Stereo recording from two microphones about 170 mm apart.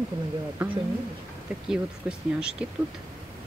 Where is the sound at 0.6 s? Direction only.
10° right (ahead or behind).